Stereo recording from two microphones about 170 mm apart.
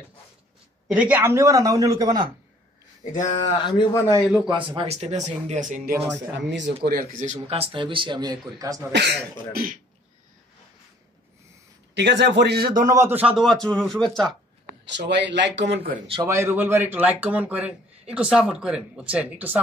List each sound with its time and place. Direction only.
0.8 s speech: 5° right (ahead or behind)
3.0 s a sound: 45° left (ahead or behind)
3.9 s a man's voice: 15° left (ahead or behind)
4.4 s speech: 30° right (ahead or behind)
8.9 s speech: 70° right (ahead or behind)
11.9 s a man's voice: 90° right; by 12.9 s 60° right (ahead or behind)
12.9 s a man's voice: 15° right (ahead or behind); by 14.3 s 5° left (ahead or behind)
14.9 s speech: 90° right
16.1 s speech: 20° right (ahead or behind)